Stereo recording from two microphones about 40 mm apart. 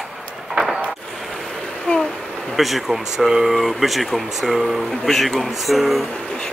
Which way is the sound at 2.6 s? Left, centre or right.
Centre.